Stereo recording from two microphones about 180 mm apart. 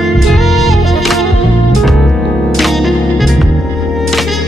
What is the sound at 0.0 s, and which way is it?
Music, centre (ahead or behind).